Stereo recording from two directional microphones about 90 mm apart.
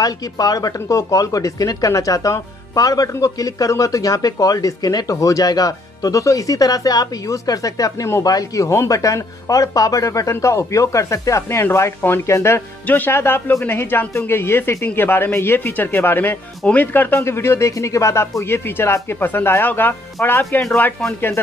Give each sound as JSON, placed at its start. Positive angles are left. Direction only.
{"t": 0.0, "sound": "speech", "side_deg": 45}
{"t": 12.8, "sound": "speech", "side_deg": 20}